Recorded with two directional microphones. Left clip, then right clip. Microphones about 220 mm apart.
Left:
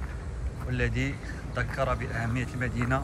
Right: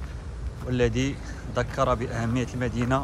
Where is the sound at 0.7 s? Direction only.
15° right (ahead or behind).